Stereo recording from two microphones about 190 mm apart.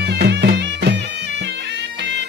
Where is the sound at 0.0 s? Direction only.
55° right (ahead or behind).